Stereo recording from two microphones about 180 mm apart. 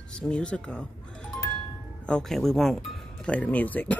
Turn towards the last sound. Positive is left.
turn(degrees=10)  # may be behind; listen again after turning